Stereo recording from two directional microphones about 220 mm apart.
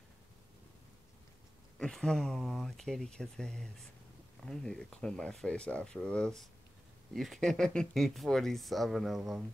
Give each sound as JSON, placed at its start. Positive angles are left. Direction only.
{"t": 1.8, "sound": "speech", "side_deg": 5}